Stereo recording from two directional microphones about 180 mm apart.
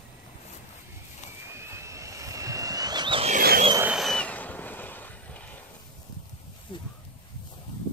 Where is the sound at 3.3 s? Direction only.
55° right (ahead or behind).